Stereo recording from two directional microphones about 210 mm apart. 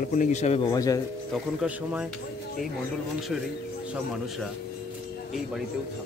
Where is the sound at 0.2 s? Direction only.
30° left (ahead or behind).